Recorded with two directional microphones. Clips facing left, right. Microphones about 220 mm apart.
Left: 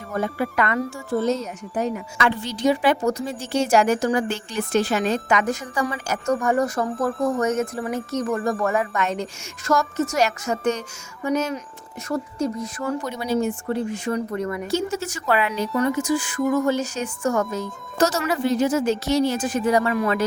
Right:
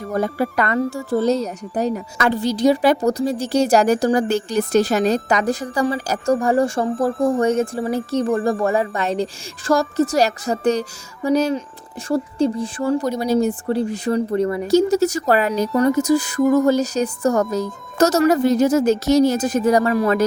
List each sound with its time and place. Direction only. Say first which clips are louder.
0.1 s speech: right 4 dB; 35° right (ahead or behind)